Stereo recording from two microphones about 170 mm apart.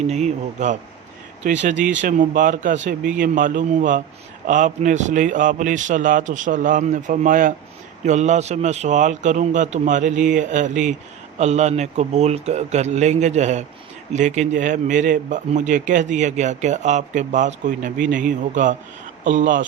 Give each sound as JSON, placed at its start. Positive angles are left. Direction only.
{"t": 0.1, "sound": "a man's voice", "side_deg": -40}